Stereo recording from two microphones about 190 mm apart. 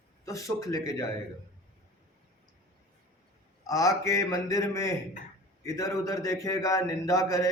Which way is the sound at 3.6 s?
20° left (ahead or behind).